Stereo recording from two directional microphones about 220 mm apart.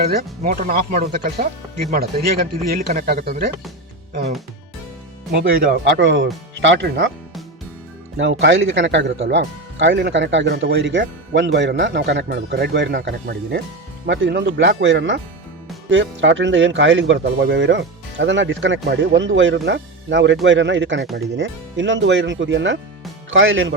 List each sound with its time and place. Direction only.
0.1 s speech: 40° right (ahead or behind)
5.3 s speech: 45° right (ahead or behind)
8.1 s speech: 55° right (ahead or behind)